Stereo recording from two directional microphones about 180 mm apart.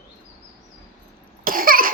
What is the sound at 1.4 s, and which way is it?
Cough, 50° right (ahead or behind).